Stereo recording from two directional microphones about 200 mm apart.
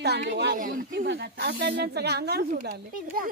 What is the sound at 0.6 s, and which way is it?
Speech, 45° right (ahead or behind).